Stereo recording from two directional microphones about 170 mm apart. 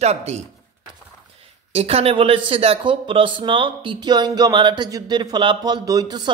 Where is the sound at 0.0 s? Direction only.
40° right (ahead or behind).